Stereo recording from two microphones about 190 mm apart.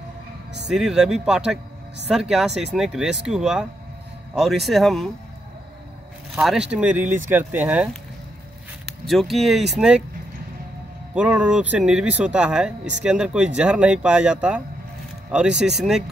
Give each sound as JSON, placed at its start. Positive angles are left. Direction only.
{"t": 0.7, "sound": "speech", "side_deg": 0}
{"t": 6.3, "sound": "speech", "side_deg": 0}
{"t": 11.1, "sound": "speech", "side_deg": -5}